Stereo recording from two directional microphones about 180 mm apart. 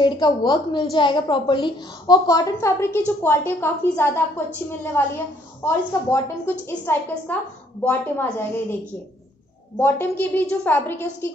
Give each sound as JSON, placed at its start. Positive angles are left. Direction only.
{"t": 0.0, "sound": "a woman's voice", "side_deg": 25}
{"t": 9.8, "sound": "a woman's voice", "side_deg": 10}